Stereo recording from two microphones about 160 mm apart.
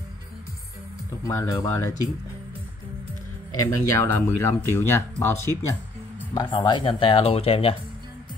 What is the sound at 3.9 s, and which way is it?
Speech, 15° left (ahead or behind).